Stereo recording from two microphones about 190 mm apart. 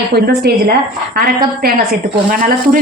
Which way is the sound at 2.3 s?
45° right (ahead or behind).